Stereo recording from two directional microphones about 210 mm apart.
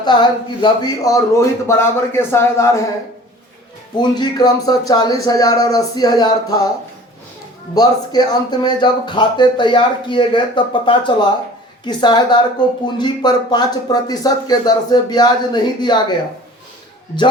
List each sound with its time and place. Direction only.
0.0 s speech: 20° left (ahead or behind)
3.9 s speech: 20° left (ahead or behind)
7.8 s speech: 20° left (ahead or behind)